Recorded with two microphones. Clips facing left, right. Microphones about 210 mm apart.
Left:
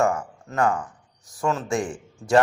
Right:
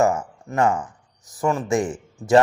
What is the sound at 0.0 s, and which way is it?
A man's voice, 25° right (ahead or behind).